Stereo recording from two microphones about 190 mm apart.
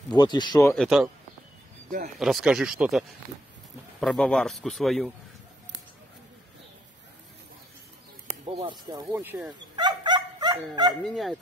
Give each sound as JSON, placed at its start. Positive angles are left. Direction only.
{"t": 0.1, "sound": "speech", "side_deg": 20}
{"t": 0.7, "sound": "a man's voice", "side_deg": 0}
{"t": 2.1, "sound": "a man's voice", "side_deg": 0}
{"t": 8.5, "sound": "speech", "side_deg": -20}
{"t": 9.8, "sound": "bow-wow", "side_deg": -25}
{"t": 11.1, "sound": "a man's voice", "side_deg": 0}